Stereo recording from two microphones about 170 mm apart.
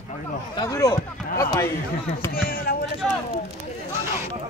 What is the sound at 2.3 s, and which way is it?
Speech, 60° left (ahead or behind).